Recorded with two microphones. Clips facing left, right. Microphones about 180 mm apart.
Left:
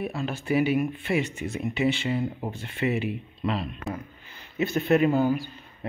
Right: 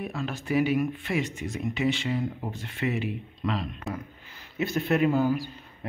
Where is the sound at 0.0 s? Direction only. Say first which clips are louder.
Left 2 dB; 5° left (ahead or behind).